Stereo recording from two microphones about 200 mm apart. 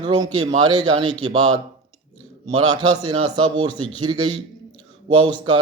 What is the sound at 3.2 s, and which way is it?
Speech, 20° right (ahead or behind).